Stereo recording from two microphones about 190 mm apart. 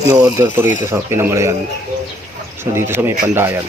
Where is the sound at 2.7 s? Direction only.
10° right (ahead or behind).